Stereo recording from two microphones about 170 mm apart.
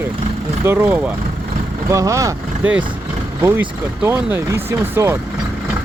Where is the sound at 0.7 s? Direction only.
15° right (ahead or behind).